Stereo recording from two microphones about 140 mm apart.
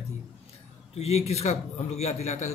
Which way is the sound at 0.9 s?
50° left (ahead or behind).